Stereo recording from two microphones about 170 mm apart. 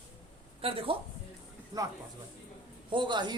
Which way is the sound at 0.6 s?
35° right (ahead or behind).